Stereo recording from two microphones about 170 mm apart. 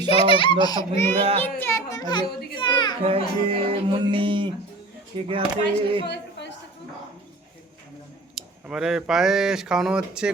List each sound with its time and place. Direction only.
0.0 s speech: 35° left (ahead or behind)
0.6 s a child's voice: 20° left (ahead or behind)
3.0 s music: 35° right (ahead or behind)
8.4 s speech: 5° right (ahead or behind)